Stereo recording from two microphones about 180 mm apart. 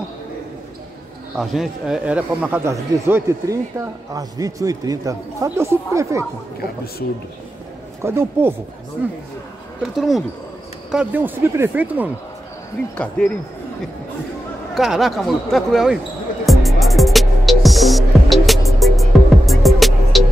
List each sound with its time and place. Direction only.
1.4 s speech: centre (ahead or behind)
8.0 s speech: 15° right (ahead or behind)
9.9 s speech: centre (ahead or behind)
13.2 s speech: 10° left (ahead or behind)
14.7 s speech: centre (ahead or behind)
16.4 s music: centre (ahead or behind)